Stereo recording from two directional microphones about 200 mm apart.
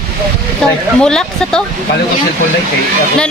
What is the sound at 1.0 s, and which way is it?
Speech, 5° left (ahead or behind).